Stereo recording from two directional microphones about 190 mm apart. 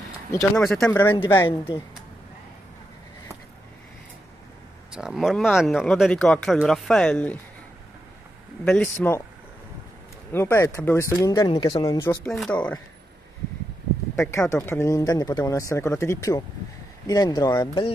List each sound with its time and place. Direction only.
0.6 s speech: centre (ahead or behind)
4.9 s speech: 5° right (ahead or behind)
8.6 s speech: 10° left (ahead or behind)
10.3 s speech: 15° left (ahead or behind)
12.3 s speech: 5° left (ahead or behind)
14.3 s speech: 15° left (ahead or behind)